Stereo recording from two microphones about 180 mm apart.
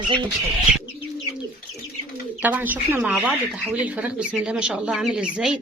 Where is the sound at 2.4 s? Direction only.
10° right (ahead or behind).